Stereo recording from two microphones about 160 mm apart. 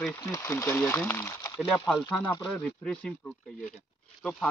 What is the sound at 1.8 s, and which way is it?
Speech, 5° left (ahead or behind).